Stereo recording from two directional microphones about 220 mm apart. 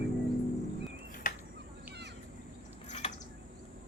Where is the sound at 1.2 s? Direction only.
35° left (ahead or behind).